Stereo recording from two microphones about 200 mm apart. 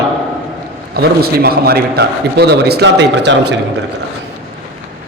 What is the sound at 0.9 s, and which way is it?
A man's voice, 50° right (ahead or behind).